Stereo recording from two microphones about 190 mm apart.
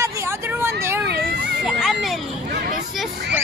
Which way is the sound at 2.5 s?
55° right (ahead or behind).